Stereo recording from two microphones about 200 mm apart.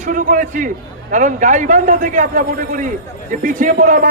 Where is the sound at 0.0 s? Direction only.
40° right (ahead or behind).